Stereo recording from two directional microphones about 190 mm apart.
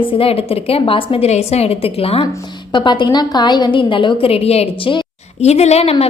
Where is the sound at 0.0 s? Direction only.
30° left (ahead or behind).